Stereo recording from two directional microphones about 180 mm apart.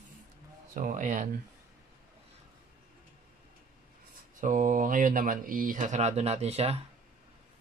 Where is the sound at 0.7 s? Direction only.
45° right (ahead or behind).